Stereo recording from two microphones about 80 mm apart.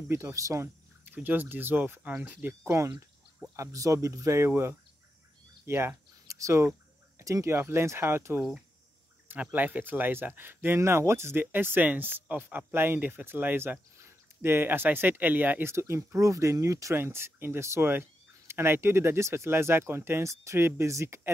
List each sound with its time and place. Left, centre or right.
0.1 s speech: right
1.0 s speech: right
3.5 s speech: right